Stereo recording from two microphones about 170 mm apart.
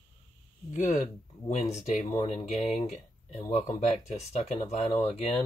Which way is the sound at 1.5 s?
45° left (ahead or behind).